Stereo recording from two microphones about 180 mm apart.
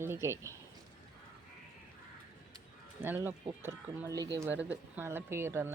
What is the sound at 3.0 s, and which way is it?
Speech, 10° right (ahead or behind).